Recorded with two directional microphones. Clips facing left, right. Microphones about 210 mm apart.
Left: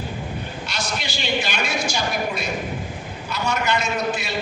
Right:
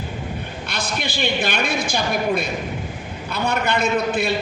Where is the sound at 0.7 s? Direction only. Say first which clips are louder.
Right 4 dB; 55° right (ahead or behind).